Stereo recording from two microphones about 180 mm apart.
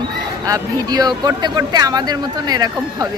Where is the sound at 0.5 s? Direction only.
20° right (ahead or behind).